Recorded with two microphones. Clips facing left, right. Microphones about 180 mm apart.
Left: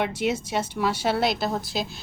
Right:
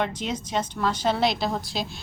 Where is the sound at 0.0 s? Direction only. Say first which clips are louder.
Left 3 dB; 10° left (ahead or behind).